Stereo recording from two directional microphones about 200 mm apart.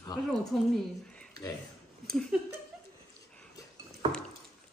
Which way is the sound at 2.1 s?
Centre (ahead or behind).